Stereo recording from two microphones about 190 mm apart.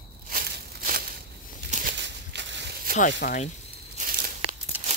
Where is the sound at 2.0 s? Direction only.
70° right (ahead or behind).